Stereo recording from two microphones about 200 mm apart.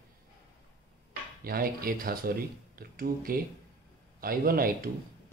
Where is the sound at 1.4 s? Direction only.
50° right (ahead or behind).